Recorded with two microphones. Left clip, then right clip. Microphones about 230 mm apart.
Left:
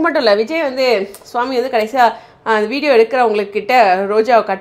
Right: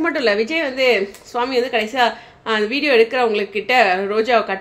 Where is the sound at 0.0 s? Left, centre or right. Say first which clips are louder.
Left 5 dB; centre.